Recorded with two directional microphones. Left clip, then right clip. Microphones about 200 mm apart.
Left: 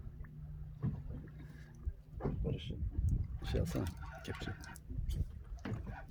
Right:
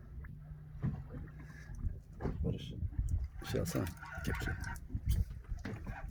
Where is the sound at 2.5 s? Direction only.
25° right (ahead or behind).